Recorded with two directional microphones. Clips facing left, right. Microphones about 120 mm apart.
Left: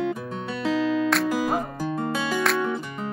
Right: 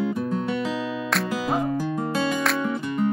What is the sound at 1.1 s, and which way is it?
Music, centre (ahead or behind).